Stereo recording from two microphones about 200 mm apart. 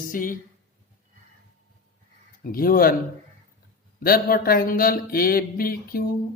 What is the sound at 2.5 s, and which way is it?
Mantra, 45° left (ahead or behind).